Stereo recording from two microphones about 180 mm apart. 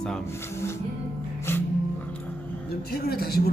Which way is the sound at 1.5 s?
15° left (ahead or behind).